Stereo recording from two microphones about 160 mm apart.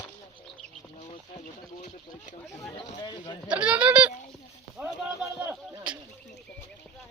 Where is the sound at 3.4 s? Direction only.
5° right (ahead or behind).